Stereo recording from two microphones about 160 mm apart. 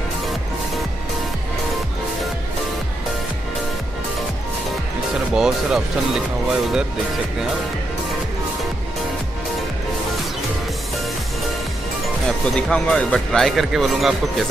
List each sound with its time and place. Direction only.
5.3 s speech: 5° right (ahead or behind)
12.3 s speech: 5° left (ahead or behind)